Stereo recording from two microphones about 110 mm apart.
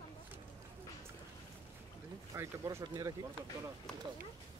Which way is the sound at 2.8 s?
35° right (ahead or behind).